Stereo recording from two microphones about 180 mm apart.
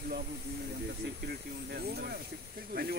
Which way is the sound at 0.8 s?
60° right (ahead or behind).